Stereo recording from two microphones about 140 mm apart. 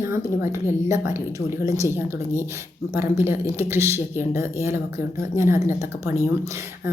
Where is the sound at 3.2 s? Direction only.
15° right (ahead or behind).